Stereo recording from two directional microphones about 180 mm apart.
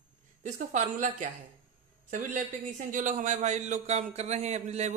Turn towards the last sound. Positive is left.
turn(degrees=-40)  # may be behind; listen again after turning